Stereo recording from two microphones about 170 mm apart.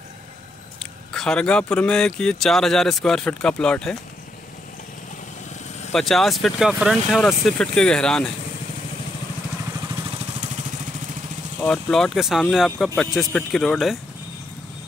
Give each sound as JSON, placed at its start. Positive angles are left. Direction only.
{"t": 1.1, "sound": "speech", "side_deg": 5}
{"t": 5.9, "sound": "speech", "side_deg": 0}
{"t": 11.6, "sound": "speech", "side_deg": 5}